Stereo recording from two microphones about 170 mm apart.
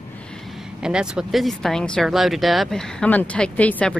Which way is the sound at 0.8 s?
5° right (ahead or behind).